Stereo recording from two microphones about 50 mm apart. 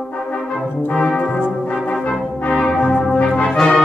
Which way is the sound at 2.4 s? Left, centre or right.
Centre.